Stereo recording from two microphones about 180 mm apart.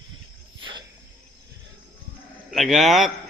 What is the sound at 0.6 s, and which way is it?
Cricket, 25° right (ahead or behind).